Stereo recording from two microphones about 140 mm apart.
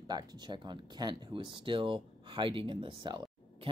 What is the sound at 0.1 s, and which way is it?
Speech, 30° right (ahead or behind).